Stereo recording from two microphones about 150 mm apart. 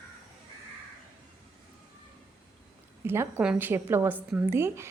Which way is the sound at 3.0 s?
15° right (ahead or behind).